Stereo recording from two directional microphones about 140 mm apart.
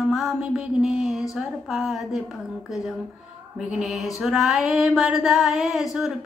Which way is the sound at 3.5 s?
5° right (ahead or behind).